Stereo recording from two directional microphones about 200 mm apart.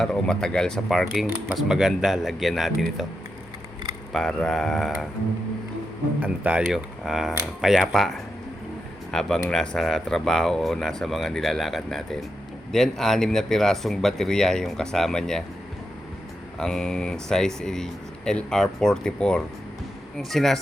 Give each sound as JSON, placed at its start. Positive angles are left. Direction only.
{"t": 0.0, "sound": "speech", "side_deg": 5}
{"t": 4.1, "sound": "speech", "side_deg": 0}
{"t": 6.1, "sound": "speech", "side_deg": -10}
{"t": 16.6, "sound": "speech", "side_deg": 5}